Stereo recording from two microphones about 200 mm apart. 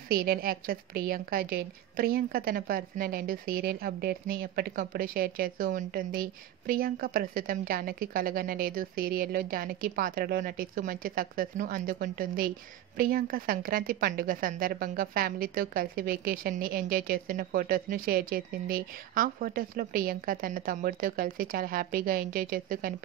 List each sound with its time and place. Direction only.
0.1 s a woman's voice: 50° right (ahead or behind)